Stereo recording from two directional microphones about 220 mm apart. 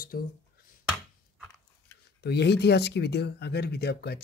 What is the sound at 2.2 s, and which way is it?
Speech, 50° left (ahead or behind).